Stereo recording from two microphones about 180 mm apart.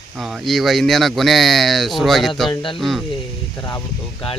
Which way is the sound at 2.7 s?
Centre (ahead or behind).